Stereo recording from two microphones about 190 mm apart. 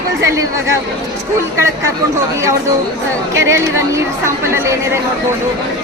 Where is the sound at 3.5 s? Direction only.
15° right (ahead or behind).